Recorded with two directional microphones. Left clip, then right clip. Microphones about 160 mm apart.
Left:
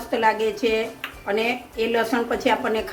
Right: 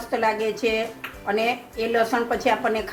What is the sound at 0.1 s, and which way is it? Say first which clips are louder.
A woman's voice: left 2 dB; 5° left (ahead or behind).